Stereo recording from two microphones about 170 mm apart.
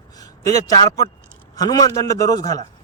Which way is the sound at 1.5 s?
20° left (ahead or behind).